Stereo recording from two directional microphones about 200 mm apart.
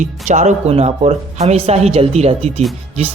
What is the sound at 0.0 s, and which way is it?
Speech, 35° right (ahead or behind).